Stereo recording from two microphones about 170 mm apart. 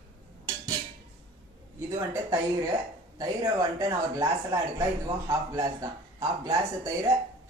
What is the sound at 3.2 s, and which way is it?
Speech, 20° right (ahead or behind).